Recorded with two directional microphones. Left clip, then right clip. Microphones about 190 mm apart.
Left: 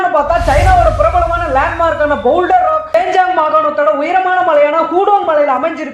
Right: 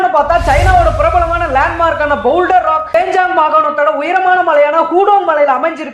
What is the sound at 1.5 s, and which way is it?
A woman's voice, 25° right (ahead or behind).